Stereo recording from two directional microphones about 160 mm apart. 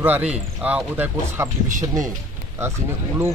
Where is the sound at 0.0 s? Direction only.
10° right (ahead or behind).